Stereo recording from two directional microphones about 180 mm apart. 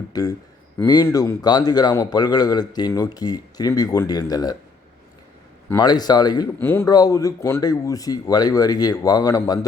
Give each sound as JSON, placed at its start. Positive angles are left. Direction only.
{"t": 0.1, "sound": "speech", "side_deg": 20}
{"t": 5.6, "sound": "speech", "side_deg": 20}
{"t": 6.6, "sound": "speech", "side_deg": 10}